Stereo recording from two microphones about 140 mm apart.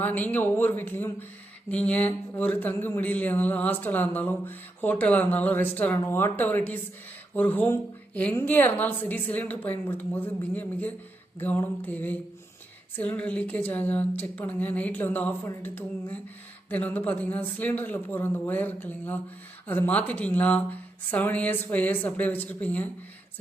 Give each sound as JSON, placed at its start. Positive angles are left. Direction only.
{"t": 0.0, "sound": "speech", "side_deg": 10}